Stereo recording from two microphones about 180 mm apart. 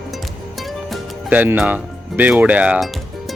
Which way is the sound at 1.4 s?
10° right (ahead or behind).